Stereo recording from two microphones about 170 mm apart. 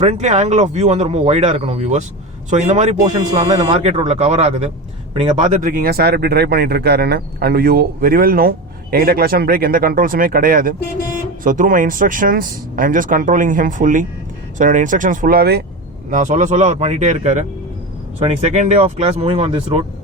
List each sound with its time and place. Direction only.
0.0 s speech: 40° right (ahead or behind); by 15.6 s 70° right (ahead or behind)
16.0 s speech: 50° right (ahead or behind); by 19.8 s 35° right (ahead or behind)